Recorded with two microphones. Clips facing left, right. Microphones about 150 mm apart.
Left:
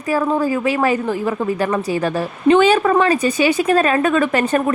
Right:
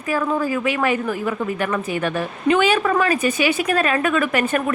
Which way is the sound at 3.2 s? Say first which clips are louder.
Left 3 dB; 40° left (ahead or behind).